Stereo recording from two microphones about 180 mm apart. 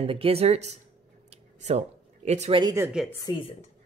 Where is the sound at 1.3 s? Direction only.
35° right (ahead or behind).